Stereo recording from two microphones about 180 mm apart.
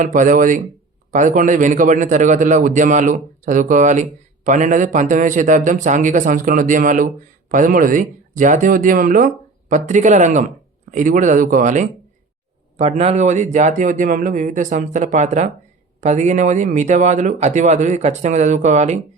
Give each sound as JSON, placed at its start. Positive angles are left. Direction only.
{"t": 0.0, "sound": "a man's voice", "side_deg": -45}